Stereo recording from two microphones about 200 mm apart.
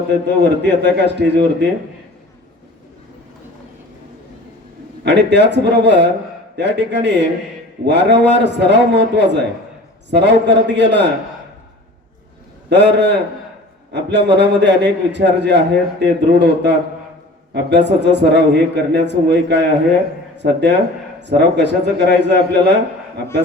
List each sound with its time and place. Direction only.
0.1 s a man's voice: 60° right (ahead or behind)
5.0 s a man's voice: 60° right (ahead or behind)
12.7 s a man's voice: 60° right (ahead or behind)